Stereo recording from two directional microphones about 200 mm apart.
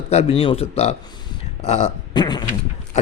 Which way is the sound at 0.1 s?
30° left (ahead or behind).